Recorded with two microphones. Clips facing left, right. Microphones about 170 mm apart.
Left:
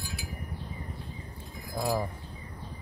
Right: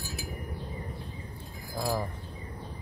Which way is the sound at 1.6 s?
5° right (ahead or behind).